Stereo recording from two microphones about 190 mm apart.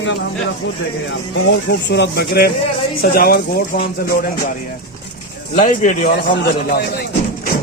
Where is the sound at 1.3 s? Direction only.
70° left (ahead or behind); by 3.8 s 50° left (ahead or behind).